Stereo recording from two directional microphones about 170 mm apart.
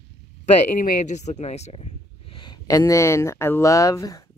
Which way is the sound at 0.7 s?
50° left (ahead or behind).